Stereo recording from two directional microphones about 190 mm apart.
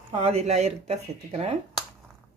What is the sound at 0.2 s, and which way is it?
Speech, 35° right (ahead or behind).